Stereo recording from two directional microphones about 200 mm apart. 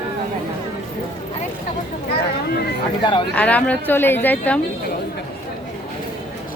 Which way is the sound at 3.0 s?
25° left (ahead or behind).